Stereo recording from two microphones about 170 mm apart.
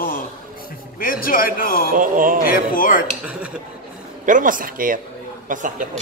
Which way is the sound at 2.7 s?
55° left (ahead or behind).